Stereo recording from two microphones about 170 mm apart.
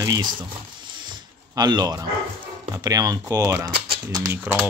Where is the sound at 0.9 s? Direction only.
25° right (ahead or behind).